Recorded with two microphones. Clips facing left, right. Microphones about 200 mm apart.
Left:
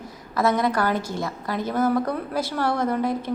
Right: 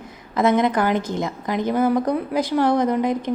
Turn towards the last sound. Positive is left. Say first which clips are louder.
# right 3 dB
turn(degrees=-15)  # may be behind; listen again after turning